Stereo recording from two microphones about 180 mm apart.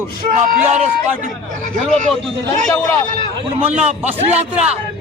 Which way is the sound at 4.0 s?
10° right (ahead or behind).